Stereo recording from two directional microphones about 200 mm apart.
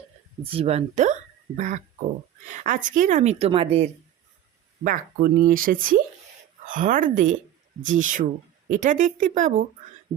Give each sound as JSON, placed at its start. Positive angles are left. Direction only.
{"t": 0.5, "sound": "a woman's voice", "side_deg": -30}
{"t": 4.8, "sound": "a woman's voice", "side_deg": -45}